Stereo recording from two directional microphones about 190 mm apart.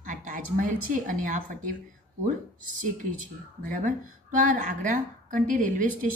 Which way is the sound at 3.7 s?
45° right (ahead or behind).